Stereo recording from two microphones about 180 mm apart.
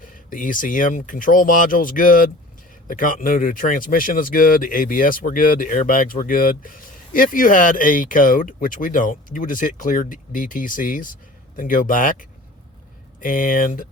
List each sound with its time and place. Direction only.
0.3 s speech: 50° left (ahead or behind)
13.2 s speech: 50° left (ahead or behind)